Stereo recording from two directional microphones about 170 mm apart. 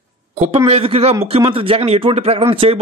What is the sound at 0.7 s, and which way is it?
Speech, 35° right (ahead or behind).